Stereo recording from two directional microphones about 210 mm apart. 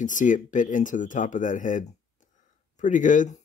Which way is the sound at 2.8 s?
35° left (ahead or behind).